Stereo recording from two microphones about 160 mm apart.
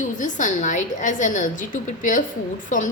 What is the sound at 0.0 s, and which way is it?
A woman's voice, 50° left (ahead or behind).